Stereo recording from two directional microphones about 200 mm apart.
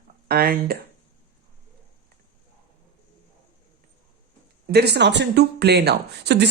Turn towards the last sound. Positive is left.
turn(degrees=-55)  # may be behind; listen again after turning